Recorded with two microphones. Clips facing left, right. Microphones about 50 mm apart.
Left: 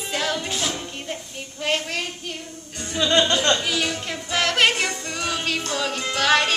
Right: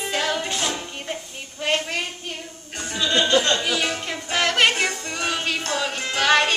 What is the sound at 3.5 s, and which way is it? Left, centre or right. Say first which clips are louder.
Speech: right 1 dB; centre.